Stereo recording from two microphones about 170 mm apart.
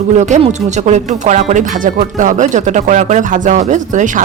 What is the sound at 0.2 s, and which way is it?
Speech, 40° right (ahead or behind).